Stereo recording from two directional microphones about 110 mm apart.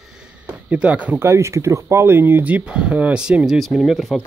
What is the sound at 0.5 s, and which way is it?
Speech, 10° right (ahead or behind).